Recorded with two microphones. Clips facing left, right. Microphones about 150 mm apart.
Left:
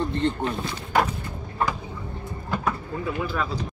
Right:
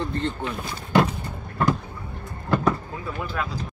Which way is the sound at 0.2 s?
40° left (ahead or behind).